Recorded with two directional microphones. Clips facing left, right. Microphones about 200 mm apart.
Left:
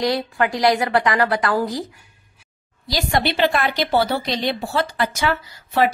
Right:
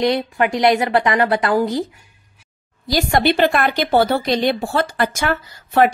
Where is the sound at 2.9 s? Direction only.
50° right (ahead or behind).